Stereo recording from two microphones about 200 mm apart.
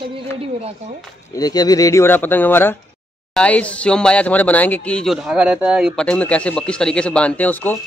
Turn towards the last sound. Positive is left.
turn(degrees=10)  # may be behind; listen again after turning